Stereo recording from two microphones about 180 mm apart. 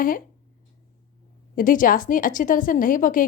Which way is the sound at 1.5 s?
50° left (ahead or behind).